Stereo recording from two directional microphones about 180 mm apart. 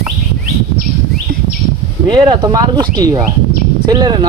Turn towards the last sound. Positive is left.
turn(degrees=-20)  # may be behind; listen again after turning